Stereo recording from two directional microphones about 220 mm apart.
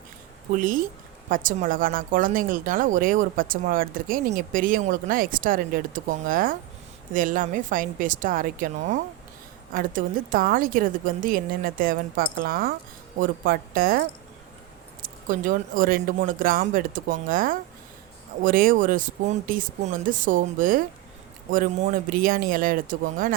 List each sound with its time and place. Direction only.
0.5 s speech: 40° right (ahead or behind)
15.0 s speech: 35° right (ahead or behind)